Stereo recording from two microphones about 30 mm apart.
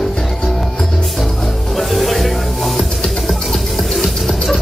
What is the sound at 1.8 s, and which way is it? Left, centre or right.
Music, centre.